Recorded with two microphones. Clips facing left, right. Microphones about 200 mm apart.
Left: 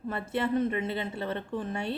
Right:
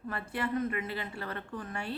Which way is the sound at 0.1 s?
25° left (ahead or behind).